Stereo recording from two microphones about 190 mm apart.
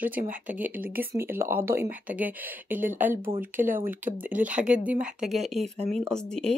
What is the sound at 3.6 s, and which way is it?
Speech, 45° right (ahead or behind).